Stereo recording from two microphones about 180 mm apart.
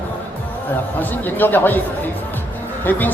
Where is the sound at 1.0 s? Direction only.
10° left (ahead or behind).